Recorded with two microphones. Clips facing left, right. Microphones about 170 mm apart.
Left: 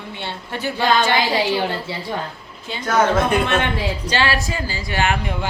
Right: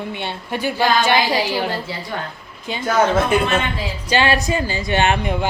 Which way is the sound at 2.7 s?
15° right (ahead or behind).